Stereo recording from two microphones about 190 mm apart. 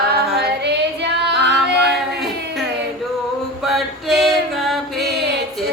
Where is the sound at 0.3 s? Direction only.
60° right (ahead or behind).